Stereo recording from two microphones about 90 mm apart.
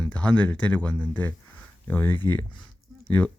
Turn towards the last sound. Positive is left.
turn(degrees=15)  # may be behind; listen again after turning